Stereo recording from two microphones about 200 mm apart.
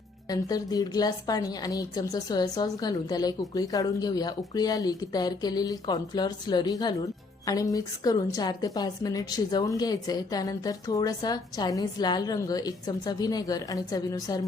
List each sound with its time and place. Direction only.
0.3 s a woman's voice: 20° left (ahead or behind)